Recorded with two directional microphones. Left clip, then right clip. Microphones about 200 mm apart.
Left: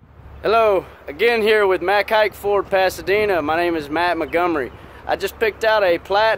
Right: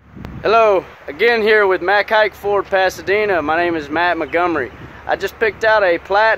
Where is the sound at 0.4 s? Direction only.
5° right (ahead or behind).